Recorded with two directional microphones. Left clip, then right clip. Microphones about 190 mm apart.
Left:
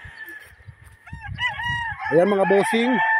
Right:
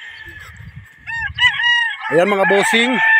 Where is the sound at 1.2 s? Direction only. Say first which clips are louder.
Right 11 dB; 55° left (ahead or behind).